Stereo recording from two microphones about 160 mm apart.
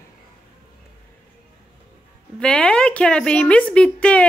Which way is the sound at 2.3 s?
5° left (ahead or behind).